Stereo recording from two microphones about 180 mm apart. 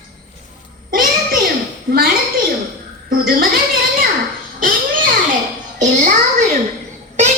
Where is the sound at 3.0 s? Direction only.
55° right (ahead or behind).